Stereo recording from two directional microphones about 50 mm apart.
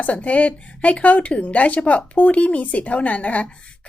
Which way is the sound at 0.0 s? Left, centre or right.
Left.